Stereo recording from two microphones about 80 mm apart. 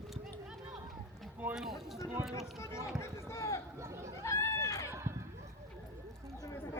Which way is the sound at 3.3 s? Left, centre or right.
Left.